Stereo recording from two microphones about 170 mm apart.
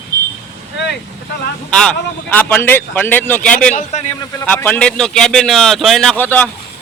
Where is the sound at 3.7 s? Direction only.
45° left (ahead or behind).